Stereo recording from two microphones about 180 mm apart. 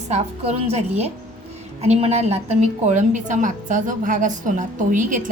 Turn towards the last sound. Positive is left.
turn(degrees=-45)  # may be behind; listen again after turning